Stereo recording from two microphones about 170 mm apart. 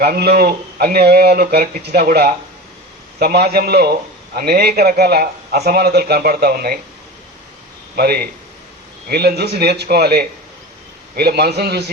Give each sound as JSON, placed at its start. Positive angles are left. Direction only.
{"t": 0.0, "sound": "a man's voice", "side_deg": -65}
{"t": 7.9, "sound": "a man's voice", "side_deg": -65}